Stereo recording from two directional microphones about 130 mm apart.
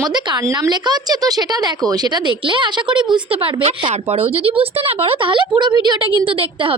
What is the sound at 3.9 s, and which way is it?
Speech, 50° right (ahead or behind).